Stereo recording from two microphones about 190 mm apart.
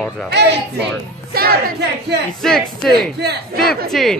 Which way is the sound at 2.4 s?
Centre (ahead or behind).